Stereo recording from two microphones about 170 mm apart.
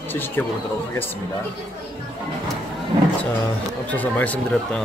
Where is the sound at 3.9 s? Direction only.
10° left (ahead or behind).